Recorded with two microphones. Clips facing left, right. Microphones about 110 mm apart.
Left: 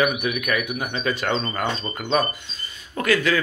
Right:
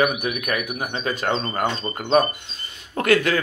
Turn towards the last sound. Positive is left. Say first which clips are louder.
# right 2 dB
turn(degrees=-55)  # may be behind; listen again after turning